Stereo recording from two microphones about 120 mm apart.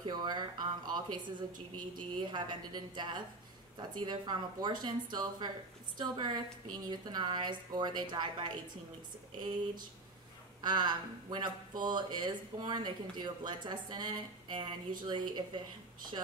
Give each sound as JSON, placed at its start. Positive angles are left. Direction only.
{"t": 0.0, "sound": "speech", "side_deg": -35}
{"t": 10.6, "sound": "speech", "side_deg": -35}